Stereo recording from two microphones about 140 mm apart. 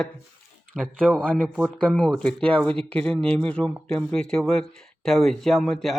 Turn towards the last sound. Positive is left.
turn(degrees=5)  # may be behind; listen again after turning